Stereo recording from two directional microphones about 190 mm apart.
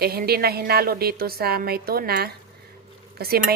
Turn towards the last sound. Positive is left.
turn(degrees=-55)  # may be behind; listen again after turning